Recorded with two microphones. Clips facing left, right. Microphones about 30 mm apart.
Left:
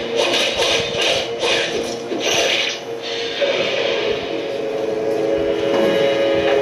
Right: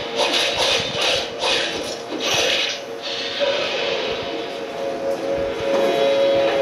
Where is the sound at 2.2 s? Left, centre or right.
Right.